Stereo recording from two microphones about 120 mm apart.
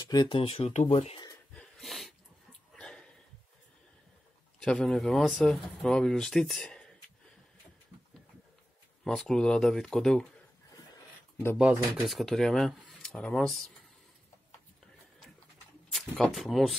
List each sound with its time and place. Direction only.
0.0 s speech: 35° left (ahead or behind)
1.5 s wheeze: 5° left (ahead or behind)
2.7 s a sound: 5° left (ahead or behind)
4.6 s speech: 5° left (ahead or behind)
9.0 s speech: 5° left (ahead or behind)
11.5 s speech: 5° right (ahead or behind)
15.9 s speech: centre (ahead or behind)